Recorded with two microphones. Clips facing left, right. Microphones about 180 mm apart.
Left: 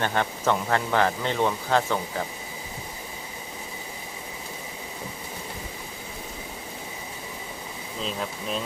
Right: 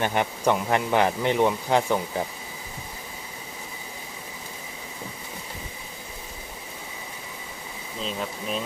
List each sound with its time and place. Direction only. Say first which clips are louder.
0.0 s speech: right 2 dB; 15° right (ahead or behind)
8.0 s speech: right 1 dB; centre (ahead or behind)